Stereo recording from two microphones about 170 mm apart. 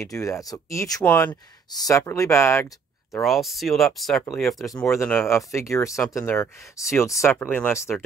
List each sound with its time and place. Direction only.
0.0 s speech: 20° left (ahead or behind)
3.2 s speech: centre (ahead or behind)